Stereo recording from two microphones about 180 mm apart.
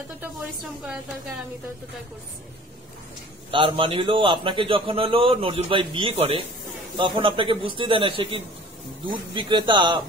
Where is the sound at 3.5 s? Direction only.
30° right (ahead or behind).